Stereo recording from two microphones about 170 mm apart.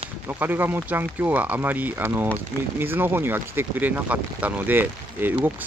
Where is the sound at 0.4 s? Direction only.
10° right (ahead or behind).